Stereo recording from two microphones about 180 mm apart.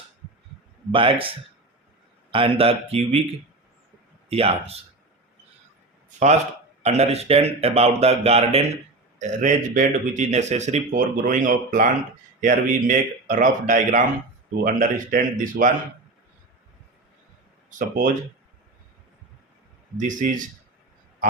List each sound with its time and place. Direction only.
0.9 s a man's voice: 30° right (ahead or behind)
2.3 s speech: 30° right (ahead or behind)
4.3 s speech: 35° right (ahead or behind)
6.8 s speech: 35° right (ahead or behind)
17.7 s speech: 45° right (ahead or behind)
20.0 s speech: 45° right (ahead or behind)